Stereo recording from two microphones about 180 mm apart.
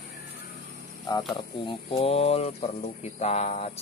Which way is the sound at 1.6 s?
30° left (ahead or behind).